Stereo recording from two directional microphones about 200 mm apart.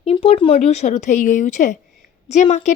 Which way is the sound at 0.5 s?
35° left (ahead or behind).